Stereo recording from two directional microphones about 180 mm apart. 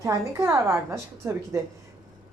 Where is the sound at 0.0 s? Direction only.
15° right (ahead or behind).